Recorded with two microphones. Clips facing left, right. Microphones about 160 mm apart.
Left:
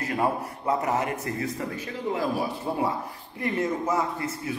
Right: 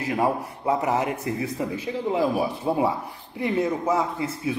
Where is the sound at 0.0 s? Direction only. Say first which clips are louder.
Right 2 dB; 15° right (ahead or behind).